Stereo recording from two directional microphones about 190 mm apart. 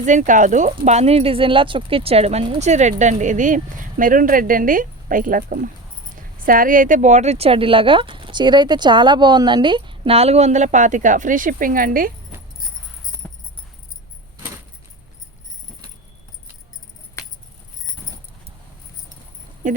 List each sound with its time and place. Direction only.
0.0 s speech: 40° right (ahead or behind)
13.2 s a sound: 5° left (ahead or behind)
19.6 s speech: 40° right (ahead or behind)